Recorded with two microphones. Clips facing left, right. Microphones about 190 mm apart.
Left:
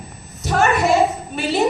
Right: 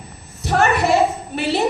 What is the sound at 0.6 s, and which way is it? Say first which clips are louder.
A woman's voice: even; 60° right (ahead or behind).